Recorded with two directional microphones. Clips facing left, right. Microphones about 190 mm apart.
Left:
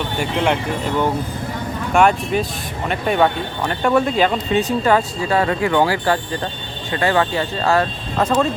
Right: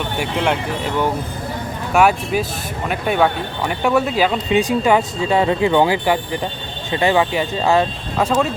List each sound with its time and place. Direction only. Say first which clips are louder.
0.2 s speech: left 1 dB; 5° right (ahead or behind)
1.9 s speech: even; 5° right (ahead or behind)